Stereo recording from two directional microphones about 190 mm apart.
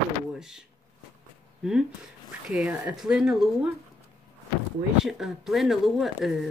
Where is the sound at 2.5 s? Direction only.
5° right (ahead or behind).